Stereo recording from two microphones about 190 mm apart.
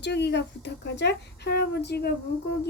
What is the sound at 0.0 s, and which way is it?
Speech, 65° left (ahead or behind).